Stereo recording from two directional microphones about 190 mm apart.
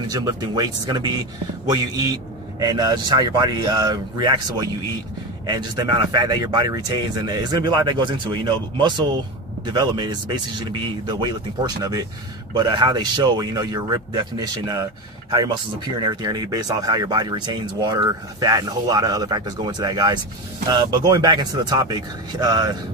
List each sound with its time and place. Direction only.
0.1 s speech: 20° right (ahead or behind)